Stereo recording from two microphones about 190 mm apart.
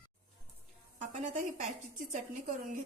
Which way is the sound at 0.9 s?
40° right (ahead or behind).